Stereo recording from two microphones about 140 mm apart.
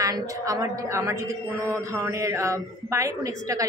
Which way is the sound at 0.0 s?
25° right (ahead or behind).